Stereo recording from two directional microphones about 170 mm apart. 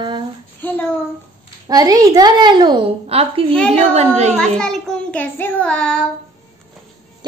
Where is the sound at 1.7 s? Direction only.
20° right (ahead or behind); by 4.4 s 40° right (ahead or behind).